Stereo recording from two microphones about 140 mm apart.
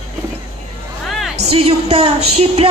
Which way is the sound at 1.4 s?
45° right (ahead or behind).